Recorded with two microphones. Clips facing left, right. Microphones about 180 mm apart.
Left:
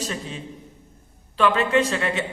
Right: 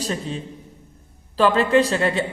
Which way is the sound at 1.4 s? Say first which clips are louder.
Right 3 dB; 35° right (ahead or behind).